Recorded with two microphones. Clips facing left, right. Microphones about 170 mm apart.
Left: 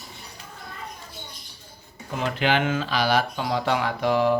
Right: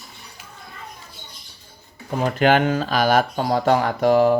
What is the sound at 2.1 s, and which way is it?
Speech, 45° right (ahead or behind).